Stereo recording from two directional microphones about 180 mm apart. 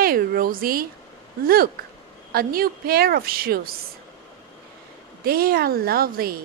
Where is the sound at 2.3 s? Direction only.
55° right (ahead or behind).